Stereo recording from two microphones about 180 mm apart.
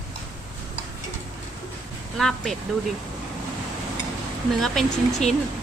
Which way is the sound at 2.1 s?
5° left (ahead or behind).